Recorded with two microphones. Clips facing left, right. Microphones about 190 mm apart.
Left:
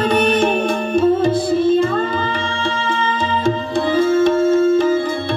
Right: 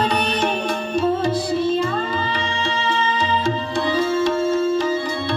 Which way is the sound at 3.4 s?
55° left (ahead or behind).